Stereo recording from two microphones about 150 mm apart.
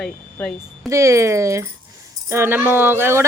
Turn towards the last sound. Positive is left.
turn(degrees=-15)  # may be behind; listen again after turning